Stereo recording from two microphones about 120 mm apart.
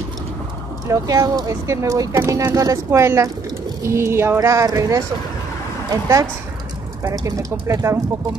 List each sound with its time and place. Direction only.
0.8 s speech: 30° right (ahead or behind)